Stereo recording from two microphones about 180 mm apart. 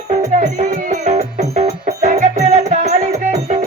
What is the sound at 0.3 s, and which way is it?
Music, 40° right (ahead or behind).